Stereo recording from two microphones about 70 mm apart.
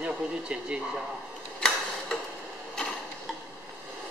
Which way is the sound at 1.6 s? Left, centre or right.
Centre.